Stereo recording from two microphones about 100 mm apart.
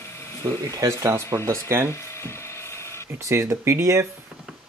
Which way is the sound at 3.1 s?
30° right (ahead or behind).